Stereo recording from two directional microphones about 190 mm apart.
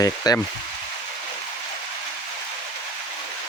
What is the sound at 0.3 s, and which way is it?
Speech, 20° left (ahead or behind).